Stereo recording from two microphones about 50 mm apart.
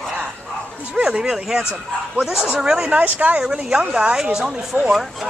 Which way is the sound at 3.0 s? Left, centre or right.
Right.